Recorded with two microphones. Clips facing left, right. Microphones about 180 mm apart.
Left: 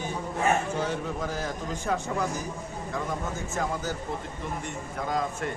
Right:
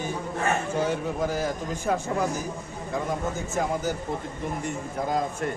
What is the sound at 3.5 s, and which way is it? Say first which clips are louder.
Speech: right 3 dB; 15° right (ahead or behind).